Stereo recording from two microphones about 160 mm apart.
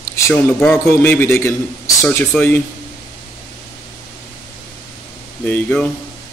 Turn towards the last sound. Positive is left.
turn(degrees=10)  # may be behind; listen again after turning